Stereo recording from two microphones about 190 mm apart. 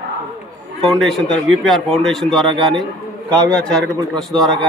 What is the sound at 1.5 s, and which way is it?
A man's voice, centre (ahead or behind).